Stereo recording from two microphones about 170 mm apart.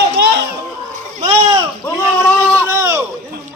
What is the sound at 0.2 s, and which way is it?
Children playing, 70° right (ahead or behind).